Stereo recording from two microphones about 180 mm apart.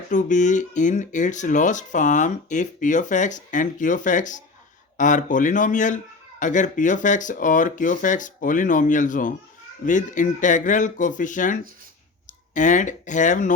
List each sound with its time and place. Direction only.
0.1 s speech: 45° left (ahead or behind)
12.5 s speech: 45° left (ahead or behind)